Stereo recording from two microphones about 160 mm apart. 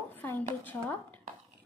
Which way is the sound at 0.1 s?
10° left (ahead or behind).